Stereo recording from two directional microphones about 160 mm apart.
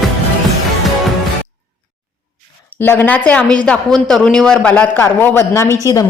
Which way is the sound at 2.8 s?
15° left (ahead or behind).